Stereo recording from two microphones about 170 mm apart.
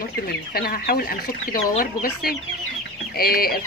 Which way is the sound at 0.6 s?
60° left (ahead or behind).